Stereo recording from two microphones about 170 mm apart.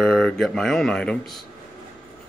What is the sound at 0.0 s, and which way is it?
Speech, centre (ahead or behind).